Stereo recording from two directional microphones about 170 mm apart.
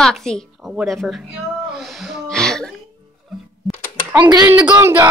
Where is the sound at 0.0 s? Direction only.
5° left (ahead or behind).